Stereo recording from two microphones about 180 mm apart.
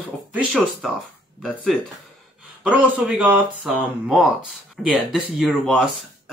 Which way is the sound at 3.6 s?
Centre (ahead or behind).